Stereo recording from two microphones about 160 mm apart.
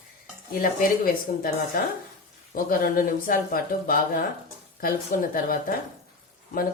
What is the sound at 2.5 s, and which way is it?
Speech, 60° left (ahead or behind).